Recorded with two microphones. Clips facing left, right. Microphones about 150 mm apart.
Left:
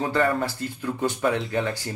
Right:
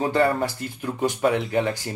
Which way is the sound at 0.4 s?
15° right (ahead or behind).